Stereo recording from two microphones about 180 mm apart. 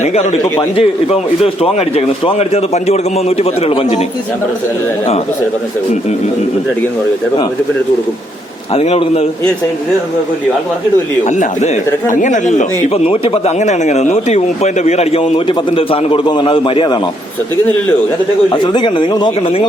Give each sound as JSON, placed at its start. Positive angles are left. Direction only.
{"t": 0.0, "sound": "a man's voice", "side_deg": 40}
{"t": 8.7, "sound": "a man's voice", "side_deg": 35}
{"t": 11.3, "sound": "a man's voice", "side_deg": 40}
{"t": 18.5, "sound": "speech", "side_deg": 25}